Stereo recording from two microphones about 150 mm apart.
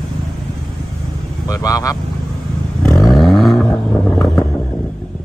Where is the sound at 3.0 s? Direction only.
Centre (ahead or behind).